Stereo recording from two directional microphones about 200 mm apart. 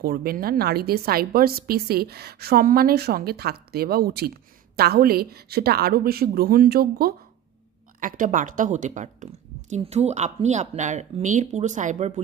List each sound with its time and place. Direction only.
0.0 s a woman's voice: 50° right (ahead or behind)